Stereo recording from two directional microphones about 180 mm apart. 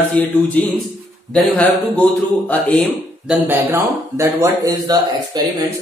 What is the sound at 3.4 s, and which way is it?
A man's voice, 10° right (ahead or behind).